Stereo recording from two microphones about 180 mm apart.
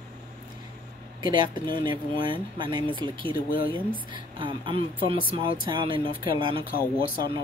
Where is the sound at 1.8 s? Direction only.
25° right (ahead or behind).